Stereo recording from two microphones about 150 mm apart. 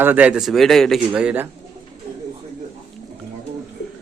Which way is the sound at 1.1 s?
10° right (ahead or behind).